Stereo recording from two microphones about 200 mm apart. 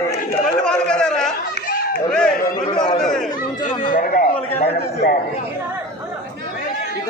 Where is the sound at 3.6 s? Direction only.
40° left (ahead or behind).